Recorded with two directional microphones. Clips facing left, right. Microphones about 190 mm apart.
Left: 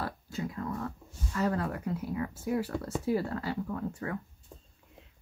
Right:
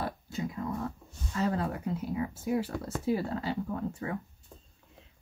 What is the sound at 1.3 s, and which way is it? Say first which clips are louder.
Speech: even; 25° right (ahead or behind).